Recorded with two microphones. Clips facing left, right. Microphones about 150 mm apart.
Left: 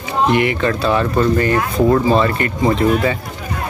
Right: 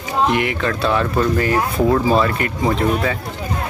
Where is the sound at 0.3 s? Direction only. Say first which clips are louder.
Left 3 dB; centre (ahead or behind).